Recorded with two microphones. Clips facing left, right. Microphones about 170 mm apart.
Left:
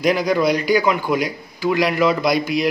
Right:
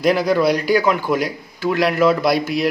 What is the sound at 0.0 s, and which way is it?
A man's voice, centre (ahead or behind).